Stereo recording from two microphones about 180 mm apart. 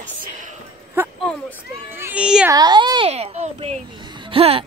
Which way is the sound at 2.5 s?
25° right (ahead or behind).